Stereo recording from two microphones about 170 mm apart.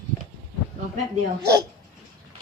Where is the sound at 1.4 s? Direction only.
75° right (ahead or behind).